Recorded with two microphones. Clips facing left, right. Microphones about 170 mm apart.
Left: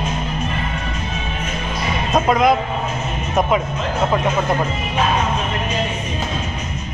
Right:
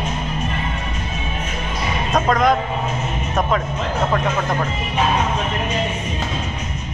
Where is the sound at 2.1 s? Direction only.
10° left (ahead or behind).